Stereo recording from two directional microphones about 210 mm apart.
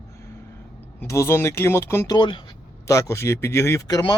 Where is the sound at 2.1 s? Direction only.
20° left (ahead or behind).